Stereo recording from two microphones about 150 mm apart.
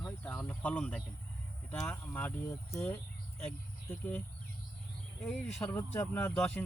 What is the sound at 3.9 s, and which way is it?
Speech, 10° left (ahead or behind).